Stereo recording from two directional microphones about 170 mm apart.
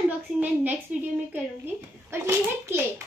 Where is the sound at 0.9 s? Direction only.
10° right (ahead or behind).